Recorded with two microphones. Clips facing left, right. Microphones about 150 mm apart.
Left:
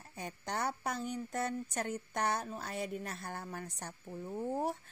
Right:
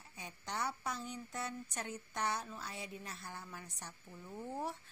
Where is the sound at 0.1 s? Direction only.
50° left (ahead or behind).